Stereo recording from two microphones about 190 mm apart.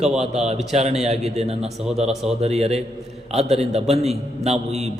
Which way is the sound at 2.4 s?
35° right (ahead or behind).